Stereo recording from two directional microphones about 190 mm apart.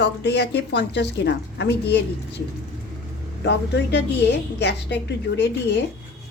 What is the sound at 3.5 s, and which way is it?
A woman's voice, 60° left (ahead or behind).